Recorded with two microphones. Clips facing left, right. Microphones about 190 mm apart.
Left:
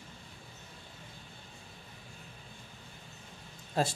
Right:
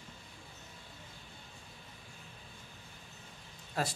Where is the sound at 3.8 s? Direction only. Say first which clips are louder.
Left 5 dB; 25° left (ahead or behind).